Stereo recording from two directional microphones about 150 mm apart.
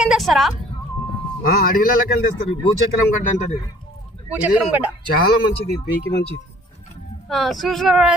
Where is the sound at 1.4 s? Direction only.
70° left (ahead or behind).